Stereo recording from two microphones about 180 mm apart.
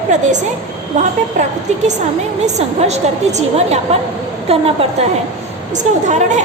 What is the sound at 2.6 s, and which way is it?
A woman's voice, 40° right (ahead or behind).